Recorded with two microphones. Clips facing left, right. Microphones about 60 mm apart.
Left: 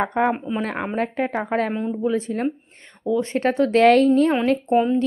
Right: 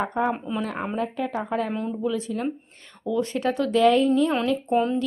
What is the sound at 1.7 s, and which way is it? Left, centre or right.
Speech, left.